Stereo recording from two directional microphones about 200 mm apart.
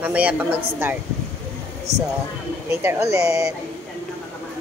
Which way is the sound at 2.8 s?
15° right (ahead or behind).